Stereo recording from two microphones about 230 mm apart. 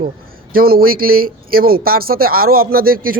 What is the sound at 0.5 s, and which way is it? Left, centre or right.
Speech, right.